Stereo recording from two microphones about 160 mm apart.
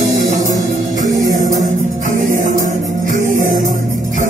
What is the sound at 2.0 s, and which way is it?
Music, 55° right (ahead or behind).